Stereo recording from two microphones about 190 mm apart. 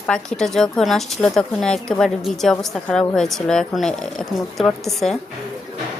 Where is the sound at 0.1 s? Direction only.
5° left (ahead or behind).